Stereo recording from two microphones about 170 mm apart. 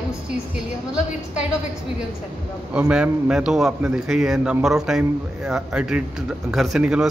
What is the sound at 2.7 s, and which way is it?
A man's voice, 5° right (ahead or behind).